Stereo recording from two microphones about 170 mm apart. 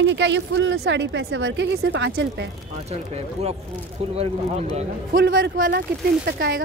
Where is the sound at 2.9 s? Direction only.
40° right (ahead or behind).